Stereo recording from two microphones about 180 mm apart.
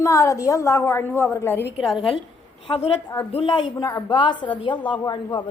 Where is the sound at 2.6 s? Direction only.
30° left (ahead or behind).